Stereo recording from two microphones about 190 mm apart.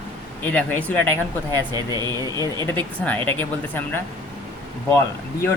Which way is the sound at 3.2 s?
10° left (ahead or behind).